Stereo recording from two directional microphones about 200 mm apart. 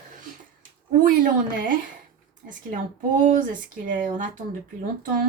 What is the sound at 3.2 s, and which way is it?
A woman's voice, 40° right (ahead or behind).